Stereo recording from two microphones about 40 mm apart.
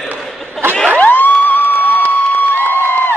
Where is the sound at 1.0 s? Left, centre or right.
Left.